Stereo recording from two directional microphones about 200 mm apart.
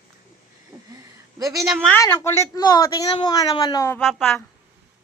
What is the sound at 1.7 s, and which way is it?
A woman's voice, 5° left (ahead or behind).